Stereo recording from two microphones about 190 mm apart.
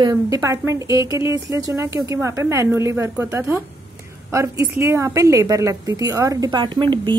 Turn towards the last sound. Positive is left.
turn(degrees=-25)  # may be behind; listen again after turning